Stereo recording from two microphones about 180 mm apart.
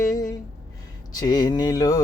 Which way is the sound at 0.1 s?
20° left (ahead or behind).